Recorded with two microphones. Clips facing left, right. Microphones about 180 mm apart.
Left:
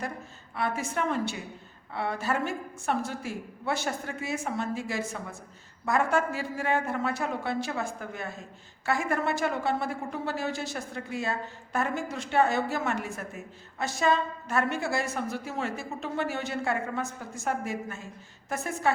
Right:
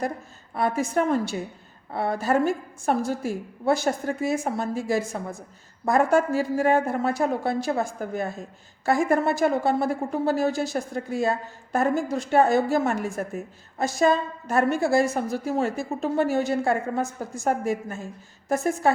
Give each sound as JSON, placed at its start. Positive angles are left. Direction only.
{"t": 0.5, "sound": "speech", "side_deg": -40}